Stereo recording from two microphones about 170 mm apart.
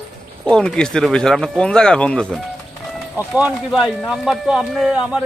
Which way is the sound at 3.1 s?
5° right (ahead or behind).